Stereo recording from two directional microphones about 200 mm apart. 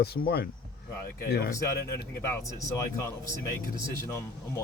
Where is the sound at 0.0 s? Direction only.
50° left (ahead or behind).